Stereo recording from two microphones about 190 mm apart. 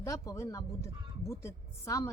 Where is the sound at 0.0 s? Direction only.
15° left (ahead or behind).